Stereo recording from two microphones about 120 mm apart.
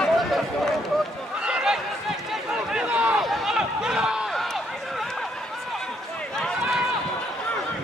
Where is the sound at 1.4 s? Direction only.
5° right (ahead or behind).